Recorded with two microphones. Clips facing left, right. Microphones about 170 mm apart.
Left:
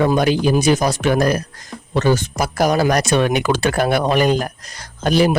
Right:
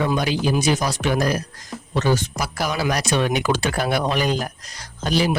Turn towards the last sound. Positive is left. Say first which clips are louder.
# left 6 dB
turn(degrees=55)  # may be behind; listen again after turning